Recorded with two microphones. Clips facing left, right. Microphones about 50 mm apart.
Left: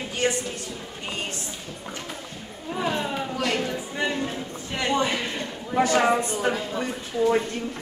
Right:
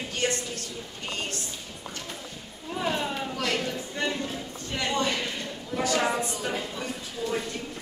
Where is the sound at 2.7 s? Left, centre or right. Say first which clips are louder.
Left 2 dB; centre.